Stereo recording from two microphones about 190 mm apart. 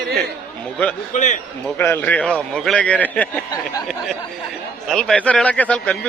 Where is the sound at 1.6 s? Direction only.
10° left (ahead or behind).